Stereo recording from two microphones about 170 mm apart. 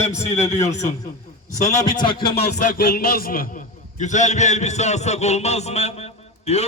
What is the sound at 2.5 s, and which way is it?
A man's voice, 55° left (ahead or behind).